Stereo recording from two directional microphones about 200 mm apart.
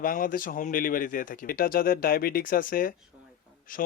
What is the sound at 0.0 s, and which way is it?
Speech, 45° left (ahead or behind).